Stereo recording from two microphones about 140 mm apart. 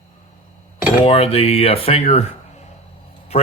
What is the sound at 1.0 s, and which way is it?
A man's voice, 45° left (ahead or behind).